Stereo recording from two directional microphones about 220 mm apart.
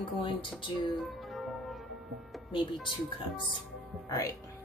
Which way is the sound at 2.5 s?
20° left (ahead or behind).